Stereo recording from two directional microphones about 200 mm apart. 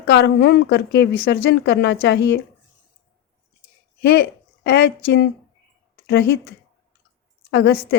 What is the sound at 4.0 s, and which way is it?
Speech, 55° left (ahead or behind).